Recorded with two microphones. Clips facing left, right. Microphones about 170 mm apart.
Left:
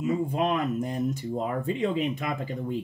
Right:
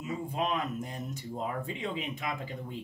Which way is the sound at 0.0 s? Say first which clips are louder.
Left 7 dB; 50° left (ahead or behind).